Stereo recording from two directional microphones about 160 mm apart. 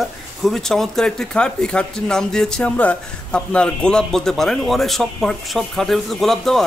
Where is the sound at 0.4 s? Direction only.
5° left (ahead or behind).